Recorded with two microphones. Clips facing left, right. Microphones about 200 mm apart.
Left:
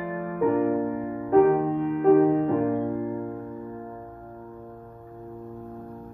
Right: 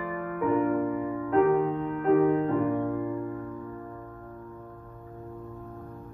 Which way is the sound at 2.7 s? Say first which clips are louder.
Left 2 dB; 25° left (ahead or behind).